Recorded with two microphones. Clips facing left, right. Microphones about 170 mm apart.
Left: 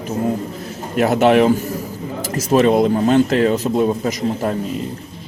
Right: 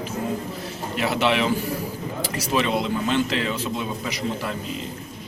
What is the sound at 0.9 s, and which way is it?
Speech, 50° left (ahead or behind).